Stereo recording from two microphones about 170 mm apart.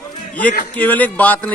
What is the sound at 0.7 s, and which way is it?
Speech, 10° left (ahead or behind).